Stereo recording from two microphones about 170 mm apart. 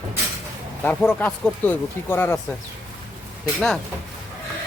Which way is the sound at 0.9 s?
5° left (ahead or behind).